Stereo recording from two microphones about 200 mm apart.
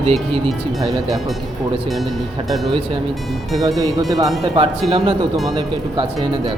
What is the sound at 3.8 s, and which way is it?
Speech, 15° right (ahead or behind).